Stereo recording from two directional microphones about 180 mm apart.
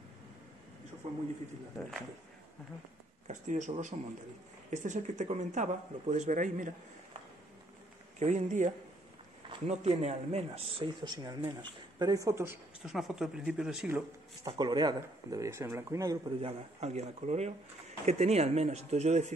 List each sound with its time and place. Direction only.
3.3 s speech: 45° right (ahead or behind)
8.2 s speech: 40° right (ahead or behind); by 12.5 s 15° right (ahead or behind)
12.8 s speech: centre (ahead or behind)
14.4 s speech: 25° right (ahead or behind)
16.3 s speech: 35° right (ahead or behind)